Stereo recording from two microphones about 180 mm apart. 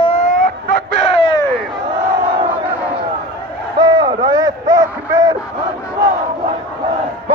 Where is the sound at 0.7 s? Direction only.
70° right (ahead or behind).